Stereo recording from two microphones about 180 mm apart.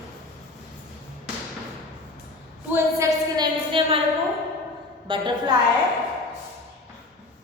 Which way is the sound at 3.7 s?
30° right (ahead or behind).